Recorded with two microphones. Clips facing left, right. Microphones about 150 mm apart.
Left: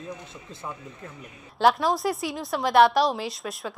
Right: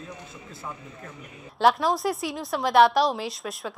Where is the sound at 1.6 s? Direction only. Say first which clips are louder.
Even; centre (ahead or behind).